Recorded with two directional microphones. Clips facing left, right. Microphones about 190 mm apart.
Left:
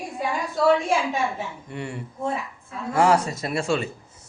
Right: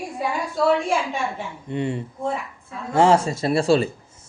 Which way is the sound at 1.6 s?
20° right (ahead or behind).